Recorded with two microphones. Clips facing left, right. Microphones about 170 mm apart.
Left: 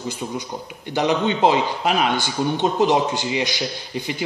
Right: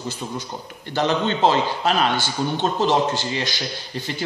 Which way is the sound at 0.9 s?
15° left (ahead or behind).